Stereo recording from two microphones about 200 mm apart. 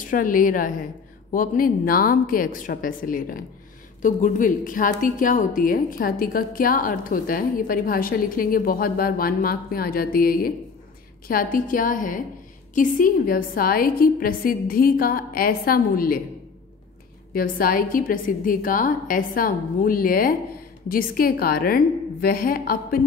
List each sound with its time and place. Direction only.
0.0 s a woman's voice: 40° left (ahead or behind)
17.3 s a woman's voice: 45° left (ahead or behind)